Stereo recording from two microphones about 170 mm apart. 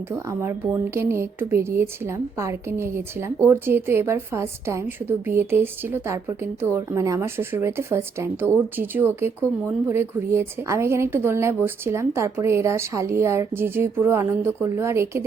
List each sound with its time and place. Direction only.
0.1 s a woman's voice: 15° right (ahead or behind)